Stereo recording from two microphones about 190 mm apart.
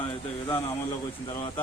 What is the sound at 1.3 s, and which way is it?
Speech, 25° left (ahead or behind).